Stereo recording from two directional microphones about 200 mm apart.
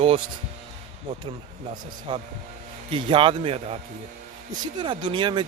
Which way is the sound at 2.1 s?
25° right (ahead or behind).